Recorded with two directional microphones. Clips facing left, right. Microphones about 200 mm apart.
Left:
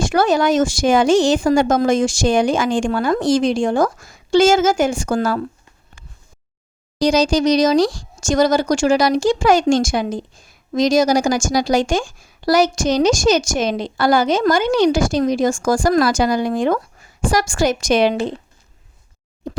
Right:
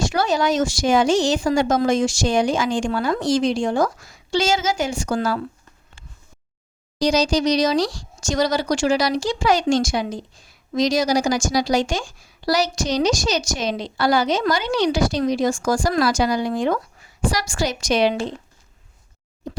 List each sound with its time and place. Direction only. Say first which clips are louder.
0.0 s speech: left 4 dB; 50° left (ahead or behind)
7.0 s speech: left 3 dB; 50° left (ahead or behind)